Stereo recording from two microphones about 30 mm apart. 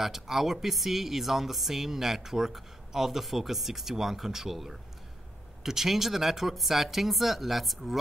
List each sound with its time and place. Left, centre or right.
0.0 s speech: centre
5.6 s speech: centre